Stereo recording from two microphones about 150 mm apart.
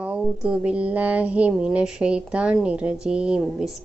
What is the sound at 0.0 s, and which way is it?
Speech, 5° right (ahead or behind).